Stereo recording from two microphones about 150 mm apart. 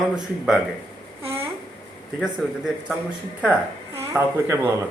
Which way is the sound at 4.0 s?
15° right (ahead or behind).